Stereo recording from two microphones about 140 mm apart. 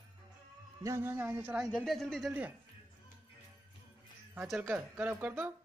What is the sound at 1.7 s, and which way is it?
Speech, 5° left (ahead or behind).